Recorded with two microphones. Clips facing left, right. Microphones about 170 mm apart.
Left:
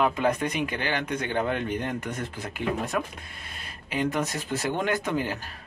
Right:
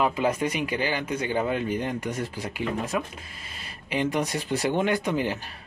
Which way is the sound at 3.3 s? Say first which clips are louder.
Even; 55° left (ahead or behind).